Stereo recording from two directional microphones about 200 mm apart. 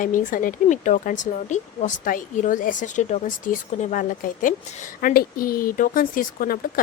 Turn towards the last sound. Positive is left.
turn(degrees=45)  # may be behind; listen again after turning